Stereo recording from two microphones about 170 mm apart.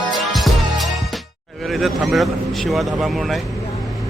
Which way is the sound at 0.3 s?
Centre (ahead or behind).